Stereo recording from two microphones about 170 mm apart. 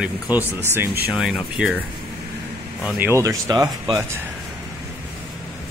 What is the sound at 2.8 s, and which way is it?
Speech, 10° right (ahead or behind).